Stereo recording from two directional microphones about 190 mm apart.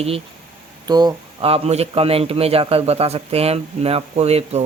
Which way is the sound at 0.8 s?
20° right (ahead or behind).